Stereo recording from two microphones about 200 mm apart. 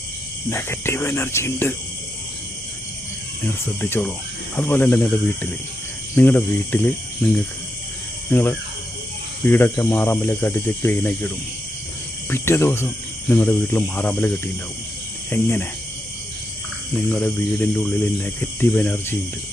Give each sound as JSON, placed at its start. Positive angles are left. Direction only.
{"t": 0.5, "sound": "speech", "side_deg": 10}
{"t": 3.4, "sound": "speech", "side_deg": 10}
{"t": 8.3, "sound": "speech", "side_deg": 10}
{"t": 12.3, "sound": "speech", "side_deg": 10}
{"t": 17.1, "sound": "speech", "side_deg": 10}